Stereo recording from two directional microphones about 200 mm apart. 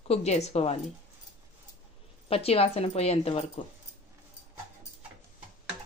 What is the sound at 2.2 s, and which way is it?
A woman's voice, 30° left (ahead or behind).